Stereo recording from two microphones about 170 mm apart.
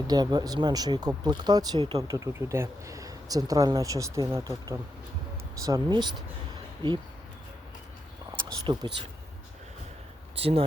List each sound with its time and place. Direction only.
0.1 s speech: 25° right (ahead or behind)
8.3 s a sound: 25° right (ahead or behind)
10.3 s speech: 35° right (ahead or behind)